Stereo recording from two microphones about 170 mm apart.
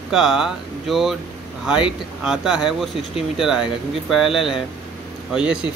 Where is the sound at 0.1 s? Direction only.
5° right (ahead or behind).